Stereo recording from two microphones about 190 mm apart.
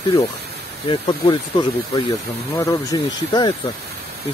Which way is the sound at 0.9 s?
25° left (ahead or behind).